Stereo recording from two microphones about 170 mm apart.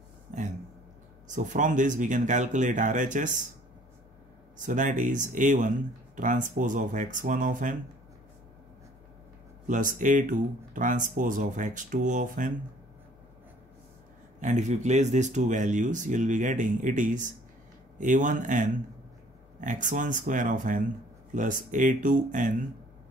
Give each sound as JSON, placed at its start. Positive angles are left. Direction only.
{"t": 1.3, "sound": "speech", "side_deg": -50}
{"t": 4.6, "sound": "speech", "side_deg": -50}
{"t": 9.7, "sound": "speech", "side_deg": -50}
{"t": 14.4, "sound": "speech", "side_deg": -45}